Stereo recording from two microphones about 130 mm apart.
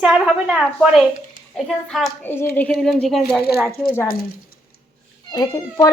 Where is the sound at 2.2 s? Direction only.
15° left (ahead or behind).